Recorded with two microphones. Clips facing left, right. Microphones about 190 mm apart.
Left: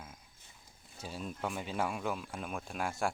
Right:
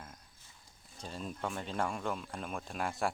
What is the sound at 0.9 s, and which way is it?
Speech, 5° left (ahead or behind).